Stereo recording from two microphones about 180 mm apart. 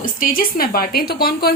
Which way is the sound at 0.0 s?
50° left (ahead or behind).